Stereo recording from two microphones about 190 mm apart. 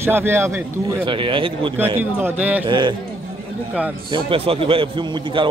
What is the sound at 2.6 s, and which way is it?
Speech, 25° right (ahead or behind).